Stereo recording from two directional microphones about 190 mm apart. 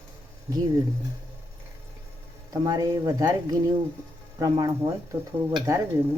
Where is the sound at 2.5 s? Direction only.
20° right (ahead or behind).